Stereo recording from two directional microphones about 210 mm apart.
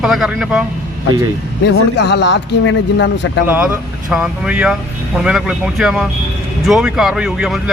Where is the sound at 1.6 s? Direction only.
55° left (ahead or behind).